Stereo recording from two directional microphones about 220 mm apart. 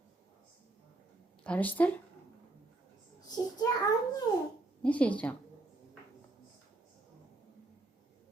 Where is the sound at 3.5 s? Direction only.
15° left (ahead or behind).